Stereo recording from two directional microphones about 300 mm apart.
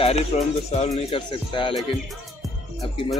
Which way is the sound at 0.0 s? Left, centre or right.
Left.